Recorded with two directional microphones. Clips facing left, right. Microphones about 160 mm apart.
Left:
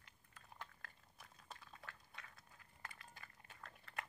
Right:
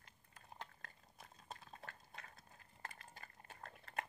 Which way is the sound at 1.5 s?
40° right (ahead or behind).